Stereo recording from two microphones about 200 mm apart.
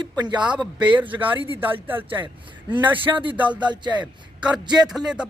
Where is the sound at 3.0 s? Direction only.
25° right (ahead or behind).